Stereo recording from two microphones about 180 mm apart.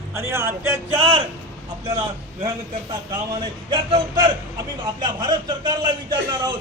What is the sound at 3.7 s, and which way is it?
Speech, 25° right (ahead or behind).